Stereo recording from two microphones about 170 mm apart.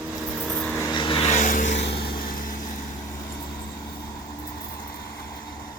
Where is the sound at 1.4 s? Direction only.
50° left (ahead or behind).